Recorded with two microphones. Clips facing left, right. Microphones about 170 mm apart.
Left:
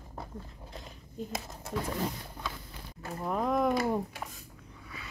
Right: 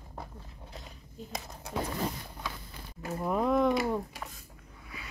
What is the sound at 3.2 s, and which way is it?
Speech, 5° right (ahead or behind).